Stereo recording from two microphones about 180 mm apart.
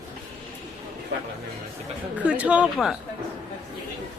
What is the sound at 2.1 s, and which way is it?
Speech, 5° right (ahead or behind).